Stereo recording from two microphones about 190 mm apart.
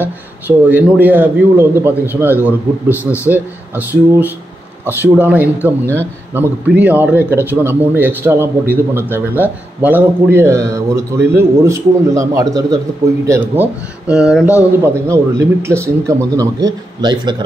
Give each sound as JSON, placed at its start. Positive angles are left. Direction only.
{"t": 0.0, "sound": "a man's voice", "side_deg": -10}
{"t": 14.8, "sound": "a man's voice", "side_deg": -15}